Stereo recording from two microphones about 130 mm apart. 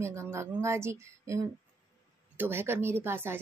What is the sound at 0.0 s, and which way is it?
Speech, 20° right (ahead or behind).